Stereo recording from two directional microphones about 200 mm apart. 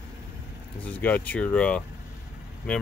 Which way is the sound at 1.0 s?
10° left (ahead or behind).